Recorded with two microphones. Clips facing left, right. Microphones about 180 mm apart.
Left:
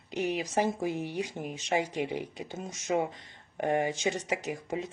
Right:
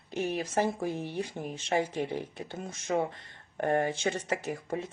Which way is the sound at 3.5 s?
15° left (ahead or behind).